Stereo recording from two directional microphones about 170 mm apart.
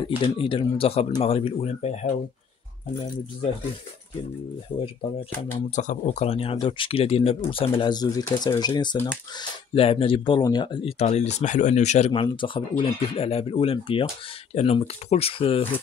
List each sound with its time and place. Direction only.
0.2 s speech: 30° left (ahead or behind)
5.8 s speech: 45° left (ahead or behind)
7.8 s speech: 25° left (ahead or behind)
8.9 s speech: 15° left (ahead or behind)
9.8 s speech: 35° left (ahead or behind)
12.1 s speech: 30° left (ahead or behind)